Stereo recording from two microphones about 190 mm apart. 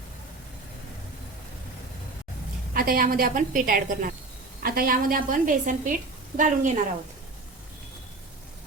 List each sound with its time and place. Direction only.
2.7 s a woman's voice: 50° right (ahead or behind)